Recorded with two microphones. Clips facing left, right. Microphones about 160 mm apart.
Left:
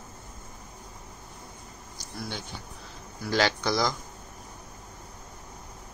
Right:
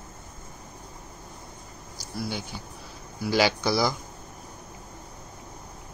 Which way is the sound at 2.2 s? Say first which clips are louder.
Right 4 dB; 5° right (ahead or behind).